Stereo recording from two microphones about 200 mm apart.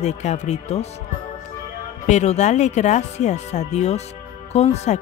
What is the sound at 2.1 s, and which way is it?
Speech, 35° left (ahead or behind).